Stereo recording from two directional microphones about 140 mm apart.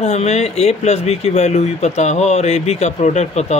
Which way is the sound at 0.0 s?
50° left (ahead or behind).